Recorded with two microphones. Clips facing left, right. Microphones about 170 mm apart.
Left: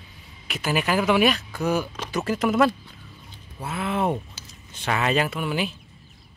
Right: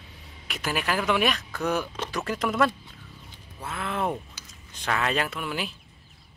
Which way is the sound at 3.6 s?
5° left (ahead or behind).